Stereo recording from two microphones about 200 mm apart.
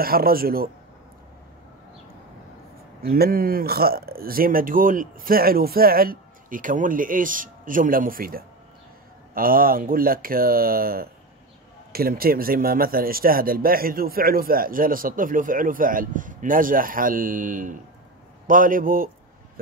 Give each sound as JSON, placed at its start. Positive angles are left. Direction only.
{"t": 0.0, "sound": "speech", "side_deg": -50}
{"t": 3.0, "sound": "speech", "side_deg": -50}